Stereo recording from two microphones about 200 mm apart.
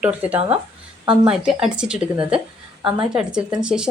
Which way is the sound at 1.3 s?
5° right (ahead or behind).